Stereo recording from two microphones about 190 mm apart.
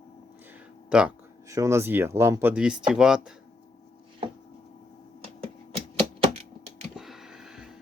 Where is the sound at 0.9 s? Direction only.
5° right (ahead or behind).